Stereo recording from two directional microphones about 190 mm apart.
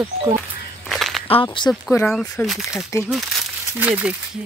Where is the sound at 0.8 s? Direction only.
Centre (ahead or behind).